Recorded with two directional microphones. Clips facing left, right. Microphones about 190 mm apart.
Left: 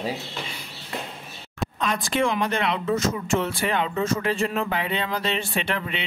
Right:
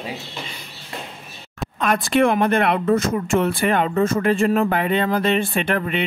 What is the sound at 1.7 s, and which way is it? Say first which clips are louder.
Speech: right 7 dB; 60° right (ahead or behind).